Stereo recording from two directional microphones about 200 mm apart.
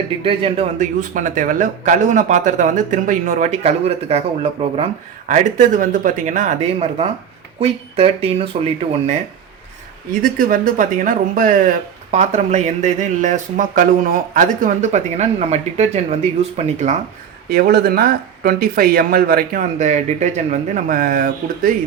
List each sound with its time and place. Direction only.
0.3 s speech: 30° right (ahead or behind)
5.3 s speech: 40° right (ahead or behind)
10.1 s speech: 45° right (ahead or behind)
17.5 s speech: 50° right (ahead or behind)